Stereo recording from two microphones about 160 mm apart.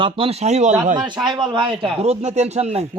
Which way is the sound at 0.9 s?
30° right (ahead or behind).